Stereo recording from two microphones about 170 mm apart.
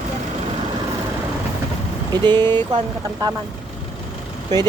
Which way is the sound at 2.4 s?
25° right (ahead or behind).